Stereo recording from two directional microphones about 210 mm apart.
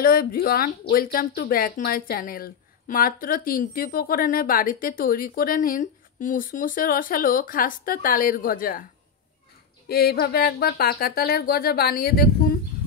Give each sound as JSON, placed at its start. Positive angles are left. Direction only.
{"t": 0.0, "sound": "speech", "side_deg": 45}
{"t": 9.8, "sound": "speech", "side_deg": 50}